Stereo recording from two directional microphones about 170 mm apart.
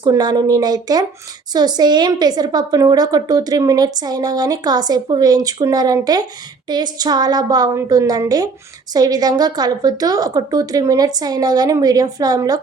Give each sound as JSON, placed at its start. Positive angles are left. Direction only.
{"t": 0.0, "sound": "a woman's voice", "side_deg": -25}